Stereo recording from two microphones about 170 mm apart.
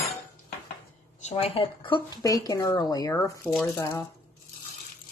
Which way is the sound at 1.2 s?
35° left (ahead or behind).